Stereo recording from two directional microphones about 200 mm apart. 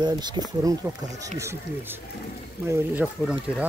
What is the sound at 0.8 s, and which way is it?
Speech, 10° right (ahead or behind).